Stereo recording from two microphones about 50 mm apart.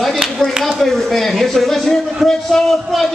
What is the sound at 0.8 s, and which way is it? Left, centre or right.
A man's voice, centre.